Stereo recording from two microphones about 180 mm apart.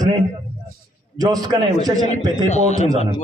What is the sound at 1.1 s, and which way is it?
Speech, 20° right (ahead or behind).